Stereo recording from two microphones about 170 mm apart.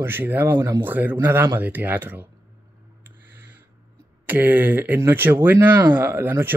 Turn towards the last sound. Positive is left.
turn(degrees=-10)  # may be behind; listen again after turning